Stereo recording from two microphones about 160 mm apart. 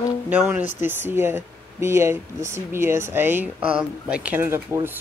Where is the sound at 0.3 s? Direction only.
10° right (ahead or behind).